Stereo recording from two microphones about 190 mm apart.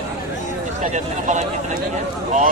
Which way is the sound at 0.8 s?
40° right (ahead or behind).